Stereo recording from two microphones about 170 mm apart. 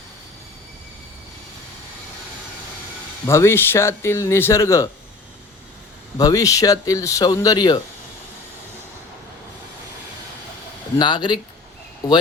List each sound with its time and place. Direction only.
3.2 s speech: 15° left (ahead or behind)
6.1 s speech: 20° left (ahead or behind)
10.9 s speech: 25° left (ahead or behind)